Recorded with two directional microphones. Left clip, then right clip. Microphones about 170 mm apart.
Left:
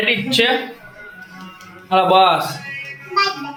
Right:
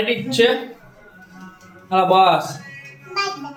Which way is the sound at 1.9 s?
5° right (ahead or behind).